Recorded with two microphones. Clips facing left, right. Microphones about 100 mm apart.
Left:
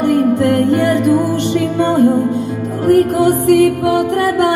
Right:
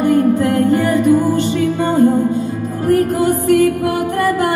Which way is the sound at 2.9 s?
70° left (ahead or behind).